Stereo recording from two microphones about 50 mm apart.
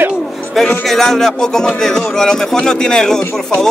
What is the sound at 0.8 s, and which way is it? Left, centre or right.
Speech, centre.